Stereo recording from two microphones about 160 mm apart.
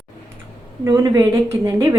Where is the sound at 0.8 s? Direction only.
15° right (ahead or behind).